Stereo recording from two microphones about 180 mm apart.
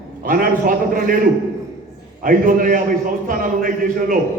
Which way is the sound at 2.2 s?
50° right (ahead or behind).